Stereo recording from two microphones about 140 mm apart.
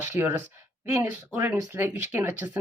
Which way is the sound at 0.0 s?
15° right (ahead or behind).